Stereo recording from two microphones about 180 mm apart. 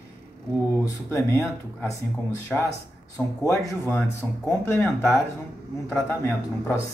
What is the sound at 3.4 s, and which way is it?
Speech, 15° left (ahead or behind).